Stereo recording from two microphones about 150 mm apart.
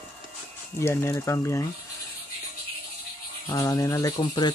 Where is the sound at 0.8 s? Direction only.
15° left (ahead or behind).